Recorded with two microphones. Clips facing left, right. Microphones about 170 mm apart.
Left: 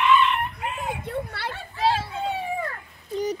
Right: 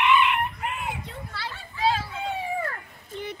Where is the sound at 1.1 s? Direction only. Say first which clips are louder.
Left 7 dB; 60° left (ahead or behind).